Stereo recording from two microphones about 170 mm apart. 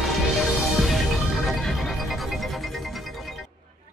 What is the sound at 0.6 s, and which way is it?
Music, centre (ahead or behind).